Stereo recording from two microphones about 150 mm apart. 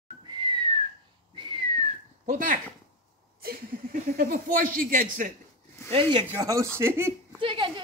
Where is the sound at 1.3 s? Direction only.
35° right (ahead or behind).